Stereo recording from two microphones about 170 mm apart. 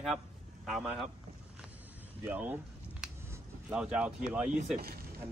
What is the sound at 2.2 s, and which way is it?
Speech, 10° right (ahead or behind).